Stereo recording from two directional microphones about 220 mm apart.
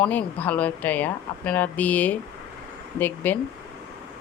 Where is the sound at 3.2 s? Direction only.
5° left (ahead or behind).